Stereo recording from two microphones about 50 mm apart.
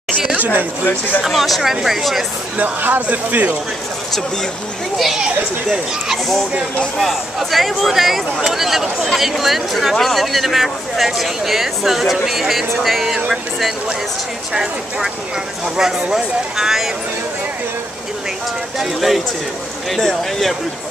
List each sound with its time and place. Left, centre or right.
0.4 s speech: right
1.2 s speech: centre
2.5 s speech: right
4.9 s speech: centre
7.0 s speech: centre
18.8 s speech: centre